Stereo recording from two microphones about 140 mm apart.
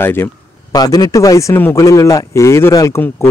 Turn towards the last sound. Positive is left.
turn(degrees=20)  # may be behind; listen again after turning